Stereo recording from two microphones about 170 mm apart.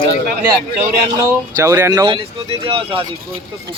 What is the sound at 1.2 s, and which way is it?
Speech, 15° right (ahead or behind).